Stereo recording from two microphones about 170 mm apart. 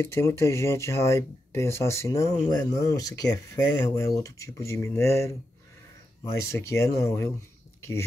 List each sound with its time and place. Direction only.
0.0 s speech: 15° left (ahead or behind)